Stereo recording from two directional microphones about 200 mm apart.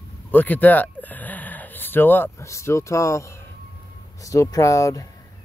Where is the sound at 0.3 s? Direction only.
10° left (ahead or behind).